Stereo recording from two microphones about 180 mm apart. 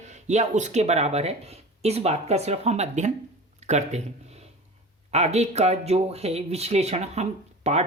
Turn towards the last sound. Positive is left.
turn(degrees=-40)  # may be behind; listen again after turning